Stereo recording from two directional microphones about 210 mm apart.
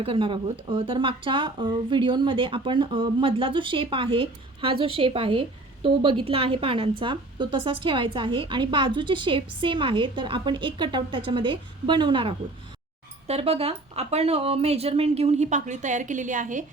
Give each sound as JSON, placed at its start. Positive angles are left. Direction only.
{"t": 0.0, "sound": "a woman's voice", "side_deg": -25}